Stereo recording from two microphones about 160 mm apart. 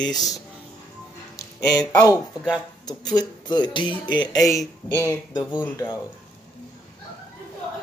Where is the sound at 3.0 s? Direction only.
5° left (ahead or behind).